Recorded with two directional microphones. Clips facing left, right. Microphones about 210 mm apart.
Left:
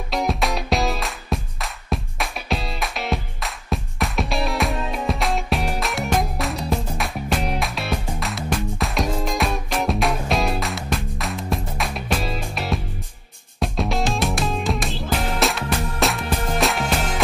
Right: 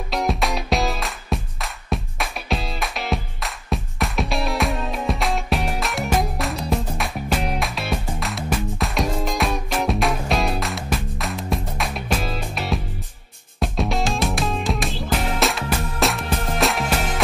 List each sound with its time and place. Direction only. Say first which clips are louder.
0.1 s music: even; centre (ahead or behind)